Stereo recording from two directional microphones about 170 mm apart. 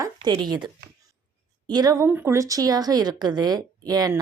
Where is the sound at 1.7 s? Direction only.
25° right (ahead or behind).